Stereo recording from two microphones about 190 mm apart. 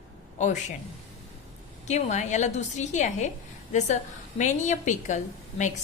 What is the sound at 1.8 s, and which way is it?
A woman's voice, 40° left (ahead or behind).